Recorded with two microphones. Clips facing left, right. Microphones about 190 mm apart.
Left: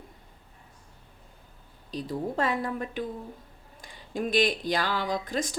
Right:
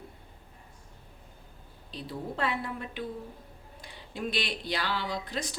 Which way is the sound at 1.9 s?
45° left (ahead or behind).